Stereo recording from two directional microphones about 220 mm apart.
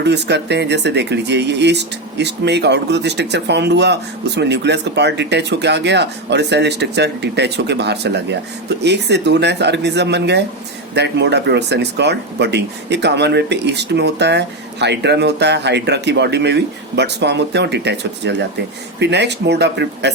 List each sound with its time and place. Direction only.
0.0 s speech: 50° right (ahead or behind)